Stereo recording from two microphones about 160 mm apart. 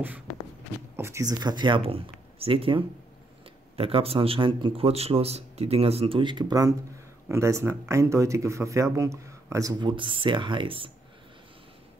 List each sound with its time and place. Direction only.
0.9 s speech: 15° right (ahead or behind); by 10.9 s 30° right (ahead or behind)